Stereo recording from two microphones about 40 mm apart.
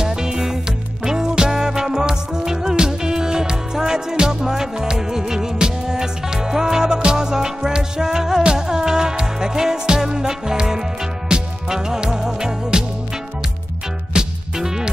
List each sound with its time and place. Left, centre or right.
0.0 s music: centre
14.1 s music: centre